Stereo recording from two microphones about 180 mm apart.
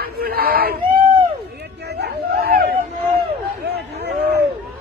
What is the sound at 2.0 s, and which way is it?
Chatter, 60° right (ahead or behind).